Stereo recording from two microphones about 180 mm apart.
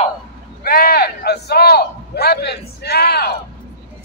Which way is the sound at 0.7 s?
55° left (ahead or behind).